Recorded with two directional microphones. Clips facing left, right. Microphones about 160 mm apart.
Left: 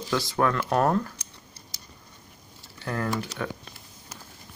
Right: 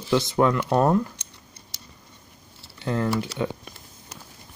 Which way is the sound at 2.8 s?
20° right (ahead or behind).